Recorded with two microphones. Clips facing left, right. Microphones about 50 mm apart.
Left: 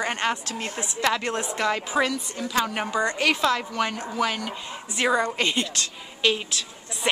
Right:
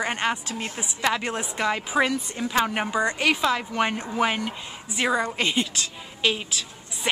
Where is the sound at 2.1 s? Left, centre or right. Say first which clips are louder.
Right 2 dB; right.